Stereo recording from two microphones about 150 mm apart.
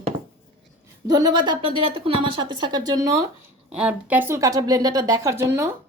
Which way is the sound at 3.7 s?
5° right (ahead or behind).